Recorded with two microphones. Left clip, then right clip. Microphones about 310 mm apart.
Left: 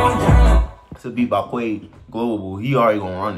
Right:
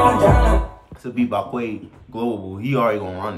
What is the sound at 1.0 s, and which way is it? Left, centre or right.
Speech, centre.